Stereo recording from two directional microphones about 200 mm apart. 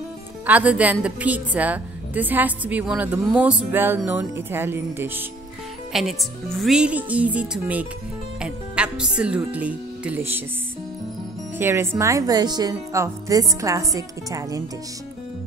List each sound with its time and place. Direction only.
0.5 s a woman's voice: 5° right (ahead or behind)
5.9 s a woman's voice: centre (ahead or behind)
11.5 s a woman's voice: 10° right (ahead or behind)